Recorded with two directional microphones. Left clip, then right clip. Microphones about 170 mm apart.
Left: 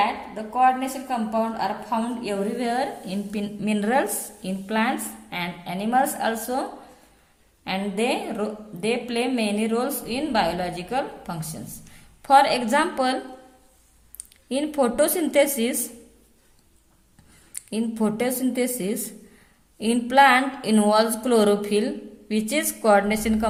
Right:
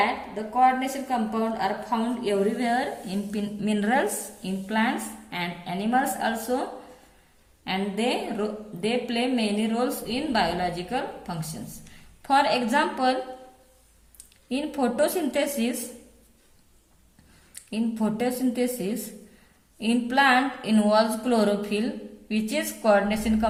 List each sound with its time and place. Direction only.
0.5 s a woman's voice: 25° left (ahead or behind)
14.2 s a woman's voice: 40° left (ahead or behind)
17.5 s a woman's voice: 40° left (ahead or behind)